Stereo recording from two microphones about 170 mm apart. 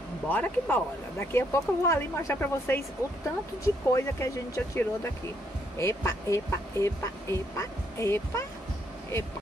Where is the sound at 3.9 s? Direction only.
15° left (ahead or behind).